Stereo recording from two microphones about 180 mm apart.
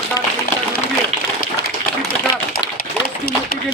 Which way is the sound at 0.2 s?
20° left (ahead or behind).